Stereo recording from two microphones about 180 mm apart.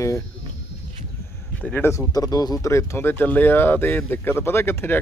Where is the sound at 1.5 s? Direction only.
10° left (ahead or behind).